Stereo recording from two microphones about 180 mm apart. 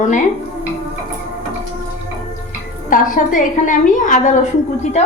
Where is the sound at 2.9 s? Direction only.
50° left (ahead or behind).